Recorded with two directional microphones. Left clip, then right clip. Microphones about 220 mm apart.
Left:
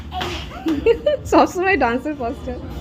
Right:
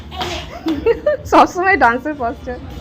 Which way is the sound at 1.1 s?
5° left (ahead or behind).